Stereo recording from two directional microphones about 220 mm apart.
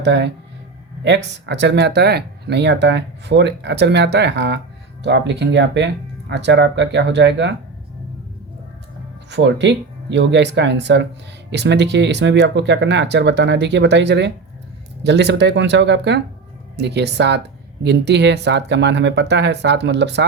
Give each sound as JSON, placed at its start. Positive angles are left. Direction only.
{"t": 0.0, "sound": "speech", "side_deg": -50}
{"t": 9.3, "sound": "speech", "side_deg": -55}